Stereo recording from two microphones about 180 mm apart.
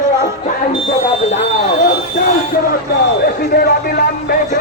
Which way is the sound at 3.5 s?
55° left (ahead or behind).